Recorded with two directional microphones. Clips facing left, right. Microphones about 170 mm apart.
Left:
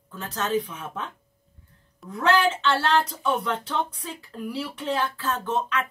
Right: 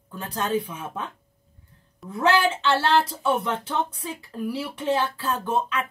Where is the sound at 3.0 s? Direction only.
30° right (ahead or behind).